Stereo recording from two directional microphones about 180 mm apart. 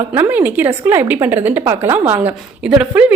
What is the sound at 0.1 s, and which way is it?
A woman's voice, 10° right (ahead or behind).